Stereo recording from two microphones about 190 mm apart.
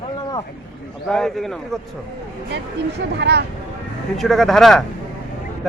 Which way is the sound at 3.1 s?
60° right (ahead or behind).